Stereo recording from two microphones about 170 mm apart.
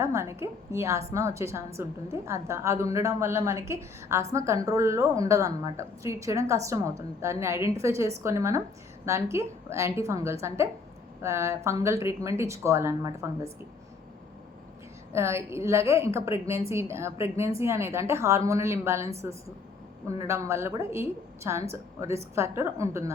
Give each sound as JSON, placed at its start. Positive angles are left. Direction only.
{"t": 0.0, "sound": "a woman's voice", "side_deg": -15}
{"t": 15.1, "sound": "a woman's voice", "side_deg": -15}